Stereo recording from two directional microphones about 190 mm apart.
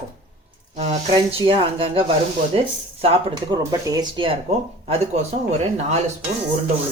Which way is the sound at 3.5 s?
15° right (ahead or behind).